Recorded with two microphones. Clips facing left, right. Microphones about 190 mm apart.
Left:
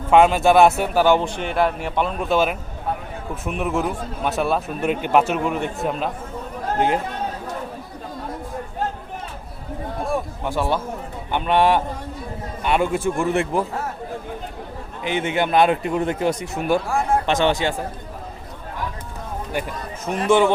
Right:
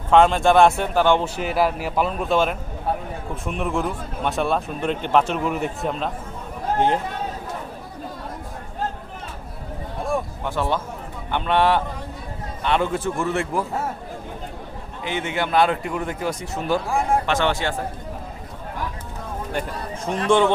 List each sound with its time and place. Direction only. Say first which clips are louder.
0.1 s a man's voice: left 1 dB; 5° left (ahead or behind)
10.1 s a sound: right 1 dB; 10° left (ahead or behind)
11.3 s a man's voice: left 2 dB; 15° left (ahead or behind)
15.0 s a man's voice: left 4 dB; 15° left (ahead or behind)
20.1 s a man's voice: left 1 dB; 5° left (ahead or behind)